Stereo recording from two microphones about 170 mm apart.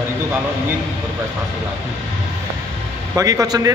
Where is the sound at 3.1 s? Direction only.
20° right (ahead or behind).